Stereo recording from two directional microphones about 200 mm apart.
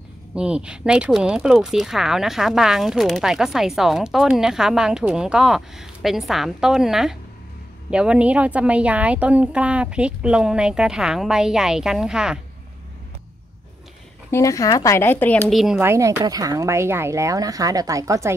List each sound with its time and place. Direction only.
0.3 s speech: 5° right (ahead or behind)
14.3 s speech: 15° left (ahead or behind); by 15.8 s centre (ahead or behind)
15.8 s speech: 15° right (ahead or behind)